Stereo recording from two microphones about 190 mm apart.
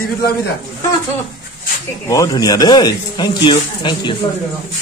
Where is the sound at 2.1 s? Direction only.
20° left (ahead or behind).